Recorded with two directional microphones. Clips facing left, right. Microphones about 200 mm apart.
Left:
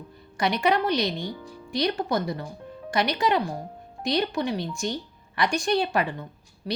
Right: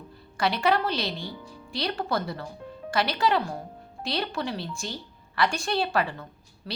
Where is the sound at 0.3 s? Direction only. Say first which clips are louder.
Left 1 dB; 20° left (ahead or behind).